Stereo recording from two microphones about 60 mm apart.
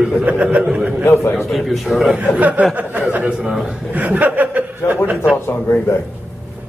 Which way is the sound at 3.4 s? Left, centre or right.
Centre.